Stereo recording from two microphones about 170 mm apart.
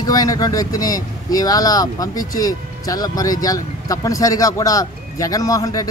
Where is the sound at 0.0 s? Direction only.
20° left (ahead or behind).